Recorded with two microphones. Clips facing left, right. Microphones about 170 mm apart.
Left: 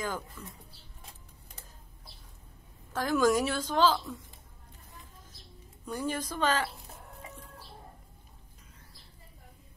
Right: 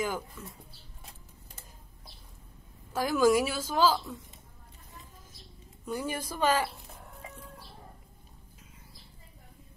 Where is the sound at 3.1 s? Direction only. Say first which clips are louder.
Right 1 dB; 5° right (ahead or behind).